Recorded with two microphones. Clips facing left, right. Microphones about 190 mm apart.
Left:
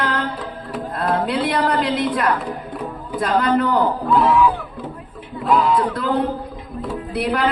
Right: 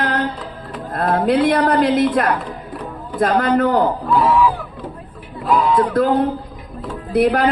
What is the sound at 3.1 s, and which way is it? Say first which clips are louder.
Speech: right 3 dB; 45° right (ahead or behind).